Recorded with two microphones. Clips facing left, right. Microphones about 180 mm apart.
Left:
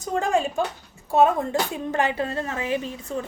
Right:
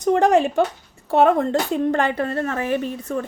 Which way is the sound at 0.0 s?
70° right (ahead or behind).